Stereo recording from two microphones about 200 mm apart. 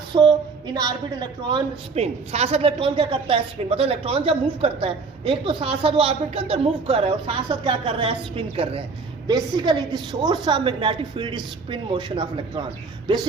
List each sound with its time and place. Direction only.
0.1 s a woman's voice: 25° right (ahead or behind)